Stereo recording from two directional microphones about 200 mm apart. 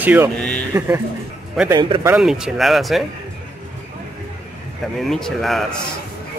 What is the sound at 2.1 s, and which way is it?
Speech, 5° right (ahead or behind).